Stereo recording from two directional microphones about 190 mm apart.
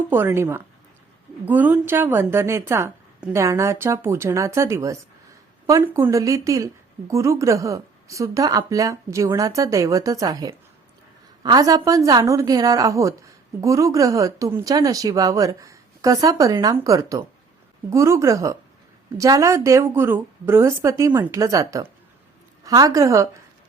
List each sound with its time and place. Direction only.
0.1 s a woman's voice: 10° right (ahead or behind)